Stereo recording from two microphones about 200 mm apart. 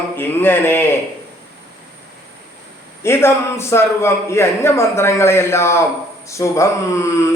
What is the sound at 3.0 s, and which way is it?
Speech, 10° left (ahead or behind).